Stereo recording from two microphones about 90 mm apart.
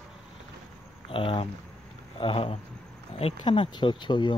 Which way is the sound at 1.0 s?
80° left.